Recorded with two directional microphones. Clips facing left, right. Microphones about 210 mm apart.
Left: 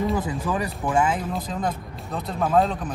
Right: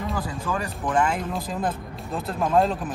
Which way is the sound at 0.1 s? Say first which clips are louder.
Left 3 dB; 20° left (ahead or behind).